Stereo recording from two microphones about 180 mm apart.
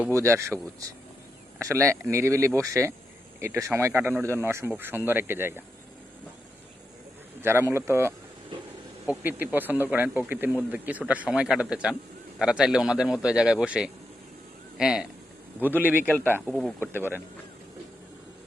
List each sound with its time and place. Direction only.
0.1 s speech: 15° right (ahead or behind)
7.4 s speech: 15° right (ahead or behind)
16.0 s speech: 10° left (ahead or behind)
16.8 s speech: 10° right (ahead or behind)